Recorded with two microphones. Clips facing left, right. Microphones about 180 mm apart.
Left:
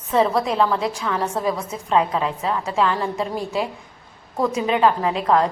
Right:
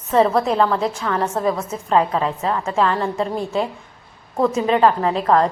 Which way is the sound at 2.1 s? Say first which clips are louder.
Right 2 dB; 30° right (ahead or behind).